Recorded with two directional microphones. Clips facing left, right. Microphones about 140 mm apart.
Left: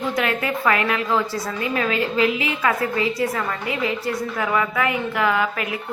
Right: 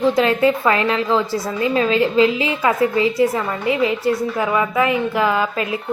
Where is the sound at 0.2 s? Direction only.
25° right (ahead or behind).